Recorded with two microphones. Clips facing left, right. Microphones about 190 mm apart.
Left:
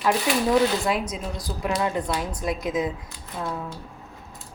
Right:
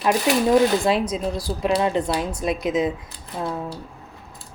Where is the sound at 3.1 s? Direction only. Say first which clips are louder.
Right 3 dB; 35° right (ahead or behind).